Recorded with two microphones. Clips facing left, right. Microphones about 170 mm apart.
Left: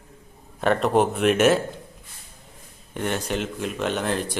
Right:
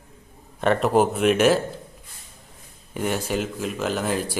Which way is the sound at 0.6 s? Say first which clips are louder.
Right 1 dB; centre (ahead or behind).